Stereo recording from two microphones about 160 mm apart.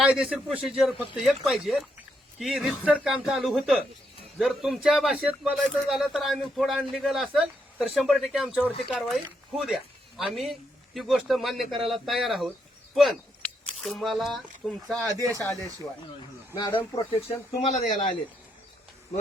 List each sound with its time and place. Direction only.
0.0 s a man's voice: 5° right (ahead or behind)
15.4 s speech: 15° left (ahead or behind)
16.6 s speech: 30° left (ahead or behind)
17.7 s speech: 50° left (ahead or behind)